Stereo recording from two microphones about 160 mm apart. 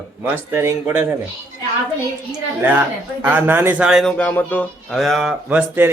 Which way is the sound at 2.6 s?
10° right (ahead or behind).